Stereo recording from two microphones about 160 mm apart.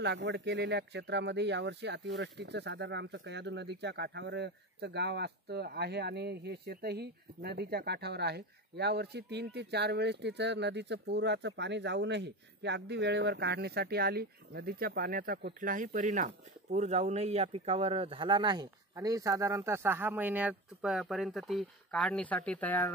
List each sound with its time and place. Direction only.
0.0 s speech: 90° right; by 22.8 s 10° left (ahead or behind)